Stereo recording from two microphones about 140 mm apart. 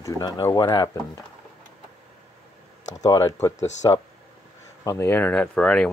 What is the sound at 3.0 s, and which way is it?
Speech, 25° left (ahead or behind).